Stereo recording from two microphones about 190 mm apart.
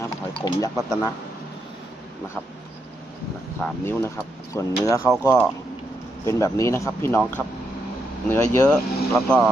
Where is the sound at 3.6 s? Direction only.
15° left (ahead or behind).